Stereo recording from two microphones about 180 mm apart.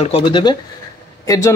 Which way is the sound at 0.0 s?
30° left (ahead or behind).